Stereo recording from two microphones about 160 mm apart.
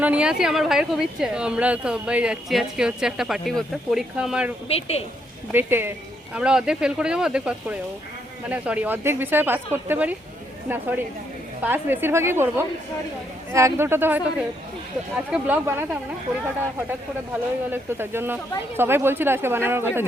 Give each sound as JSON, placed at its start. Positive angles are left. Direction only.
{"t": 0.0, "sound": "a woman's voice", "side_deg": -10}
{"t": 4.7, "sound": "a woman's voice", "side_deg": 40}
{"t": 5.5, "sound": "a woman's voice", "side_deg": -15}
{"t": 17.7, "sound": "speech", "side_deg": -15}